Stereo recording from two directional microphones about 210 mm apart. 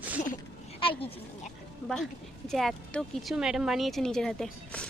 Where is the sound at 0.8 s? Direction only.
25° left (ahead or behind).